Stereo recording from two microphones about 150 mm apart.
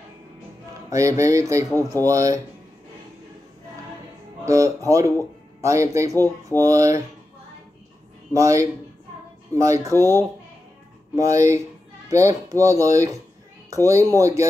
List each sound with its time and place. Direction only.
0.8 s speech: 20° right (ahead or behind)
4.5 s speech: 20° right (ahead or behind)
8.3 s speech: 20° right (ahead or behind)